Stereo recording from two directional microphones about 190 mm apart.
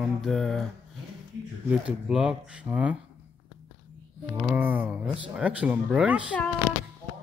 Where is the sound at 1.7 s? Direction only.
5° right (ahead or behind).